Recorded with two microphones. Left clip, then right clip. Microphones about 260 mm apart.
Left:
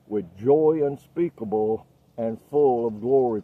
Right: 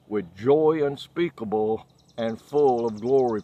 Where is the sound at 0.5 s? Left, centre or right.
Centre.